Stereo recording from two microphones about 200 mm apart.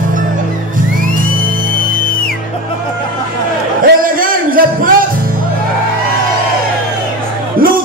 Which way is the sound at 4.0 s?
45° right (ahead or behind).